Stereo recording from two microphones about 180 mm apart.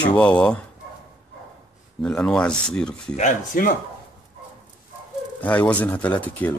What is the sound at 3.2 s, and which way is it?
Speech, 45° left (ahead or behind).